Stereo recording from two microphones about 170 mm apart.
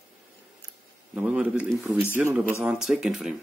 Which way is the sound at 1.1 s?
5° right (ahead or behind).